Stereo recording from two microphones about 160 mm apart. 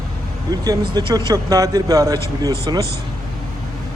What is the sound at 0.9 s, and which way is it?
A man's voice, 25° right (ahead or behind).